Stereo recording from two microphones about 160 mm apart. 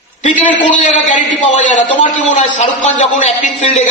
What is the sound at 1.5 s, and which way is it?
A man's voice, 50° left (ahead or behind).